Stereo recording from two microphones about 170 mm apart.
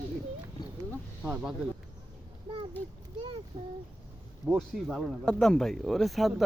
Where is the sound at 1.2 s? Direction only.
5° right (ahead or behind).